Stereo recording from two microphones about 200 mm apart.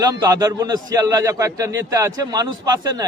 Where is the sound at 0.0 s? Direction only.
15° right (ahead or behind).